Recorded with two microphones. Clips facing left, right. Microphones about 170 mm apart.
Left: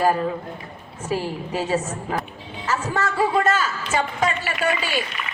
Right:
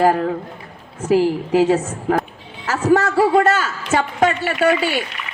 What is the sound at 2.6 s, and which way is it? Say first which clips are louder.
A woman's voice: right 8 dB; 80° right.